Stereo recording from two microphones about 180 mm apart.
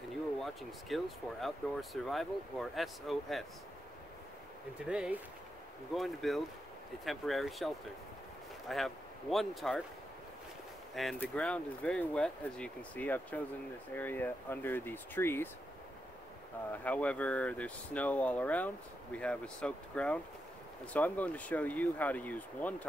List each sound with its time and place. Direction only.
0.4 s speech: centre (ahead or behind)
4.8 s speech: 5° right (ahead or behind)
11.0 s speech: 5° left (ahead or behind)
16.7 s speech: 10° left (ahead or behind)